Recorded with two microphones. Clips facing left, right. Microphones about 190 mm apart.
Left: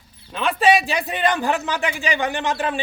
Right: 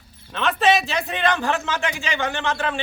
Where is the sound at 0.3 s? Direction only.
10° left (ahead or behind).